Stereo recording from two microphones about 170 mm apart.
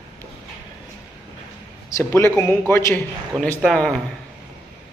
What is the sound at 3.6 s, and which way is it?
Speech, centre (ahead or behind).